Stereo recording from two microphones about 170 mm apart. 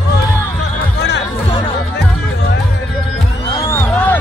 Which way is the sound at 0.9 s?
90° left.